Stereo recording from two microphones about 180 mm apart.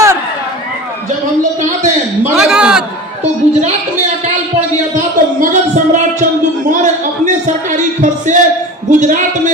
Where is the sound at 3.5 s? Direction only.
35° right (ahead or behind).